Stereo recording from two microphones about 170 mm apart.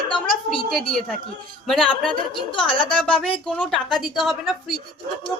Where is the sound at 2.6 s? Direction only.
30° left (ahead or behind).